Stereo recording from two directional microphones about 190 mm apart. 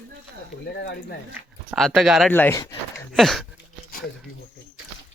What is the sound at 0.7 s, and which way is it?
Speech, 65° left (ahead or behind).